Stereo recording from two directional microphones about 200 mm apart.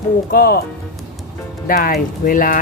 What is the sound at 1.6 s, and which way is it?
Speech, 45° left (ahead or behind).